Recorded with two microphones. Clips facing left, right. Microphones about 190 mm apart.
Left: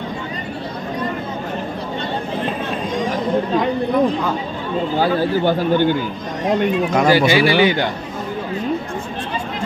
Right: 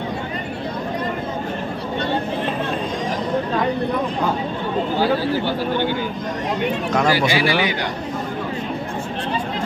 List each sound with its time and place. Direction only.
5.4 s a man's voice: 50° left (ahead or behind)
7.1 s speech: 25° left (ahead or behind)